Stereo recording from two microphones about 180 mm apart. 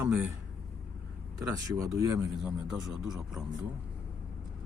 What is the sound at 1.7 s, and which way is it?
Speech, 15° right (ahead or behind).